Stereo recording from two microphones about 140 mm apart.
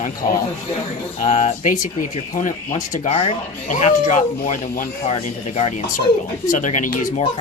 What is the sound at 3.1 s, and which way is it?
Speech, 45° left (ahead or behind).